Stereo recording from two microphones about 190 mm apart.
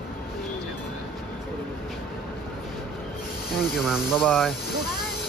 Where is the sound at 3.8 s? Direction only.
5° right (ahead or behind).